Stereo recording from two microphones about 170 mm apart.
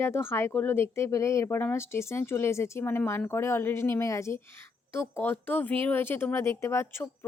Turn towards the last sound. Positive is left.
turn(degrees=15)  # may be behind; listen again after turning